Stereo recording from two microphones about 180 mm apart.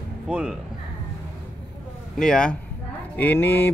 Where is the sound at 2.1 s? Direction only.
5° left (ahead or behind).